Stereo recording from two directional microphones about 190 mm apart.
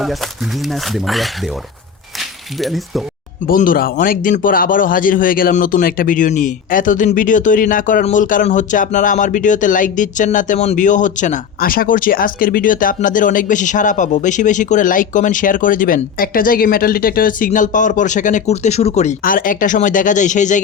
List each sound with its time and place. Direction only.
0.7 s speech: centre (ahead or behind)
2.6 s speech: centre (ahead or behind)
3.4 s speech: 45° left (ahead or behind)